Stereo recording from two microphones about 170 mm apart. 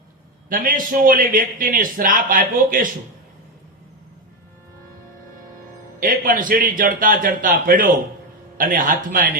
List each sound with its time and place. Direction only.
0.5 s a man's voice: 55° right (ahead or behind)
6.0 s a man's voice: 55° right (ahead or behind)